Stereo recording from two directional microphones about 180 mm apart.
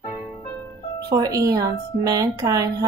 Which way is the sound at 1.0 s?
20° right (ahead or behind).